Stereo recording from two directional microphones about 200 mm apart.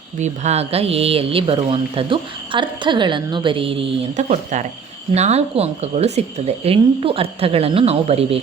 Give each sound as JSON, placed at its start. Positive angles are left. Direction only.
{"t": 0.2, "sound": "speech", "side_deg": -35}